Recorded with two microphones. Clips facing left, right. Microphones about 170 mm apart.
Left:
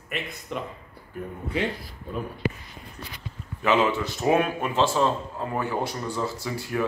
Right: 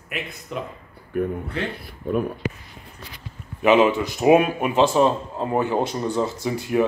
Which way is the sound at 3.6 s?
20° right (ahead or behind).